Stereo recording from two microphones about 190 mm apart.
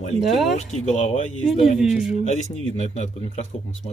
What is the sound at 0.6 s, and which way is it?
Speech, 35° left (ahead or behind).